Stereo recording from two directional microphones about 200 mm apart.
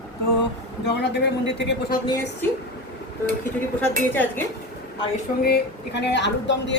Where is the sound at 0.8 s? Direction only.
60° left (ahead or behind).